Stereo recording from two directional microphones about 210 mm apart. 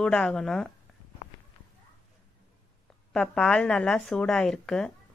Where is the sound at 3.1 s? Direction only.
5° left (ahead or behind).